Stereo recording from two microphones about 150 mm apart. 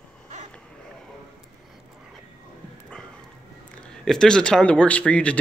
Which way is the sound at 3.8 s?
5° left (ahead or behind).